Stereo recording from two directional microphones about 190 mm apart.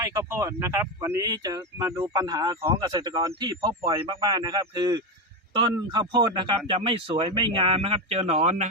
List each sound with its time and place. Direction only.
0.0 s speech: 15° right (ahead or behind); by 8.7 s 40° right (ahead or behind)